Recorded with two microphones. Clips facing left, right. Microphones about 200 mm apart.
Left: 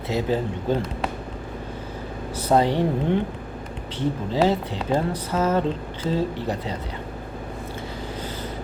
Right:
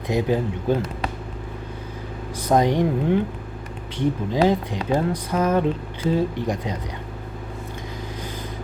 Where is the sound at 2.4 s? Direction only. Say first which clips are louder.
Right 1 dB; 15° right (ahead or behind).